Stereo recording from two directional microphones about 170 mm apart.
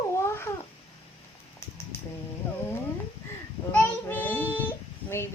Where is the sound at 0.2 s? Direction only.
15° left (ahead or behind).